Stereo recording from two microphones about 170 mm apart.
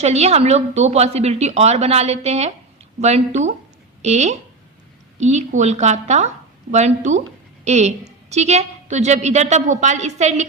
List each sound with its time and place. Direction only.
0.0 s a woman's voice: 40° right (ahead or behind)